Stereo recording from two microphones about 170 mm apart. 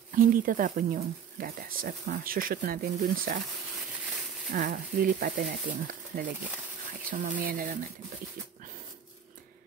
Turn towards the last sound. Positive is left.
turn(degrees=-55)  # may be behind; listen again after turning